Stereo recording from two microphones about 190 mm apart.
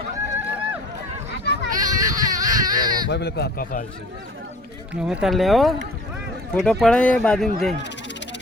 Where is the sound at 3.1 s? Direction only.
60° left (ahead or behind).